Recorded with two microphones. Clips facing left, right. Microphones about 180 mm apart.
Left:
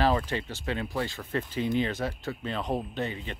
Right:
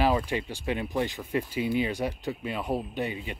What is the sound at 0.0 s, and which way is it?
Speech, 10° right (ahead or behind).